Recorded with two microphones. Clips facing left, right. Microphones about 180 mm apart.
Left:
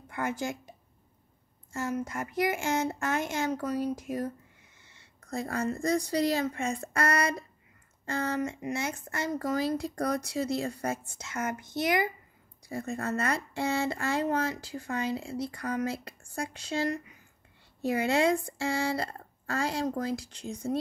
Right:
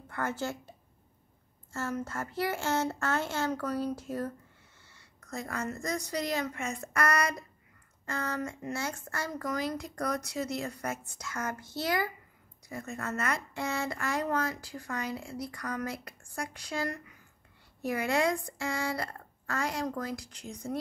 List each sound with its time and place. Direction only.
0.1 s speech: 15° left (ahead or behind)
4.8 s a woman's voice: 25° left (ahead or behind)
12.6 s speech: 30° left (ahead or behind)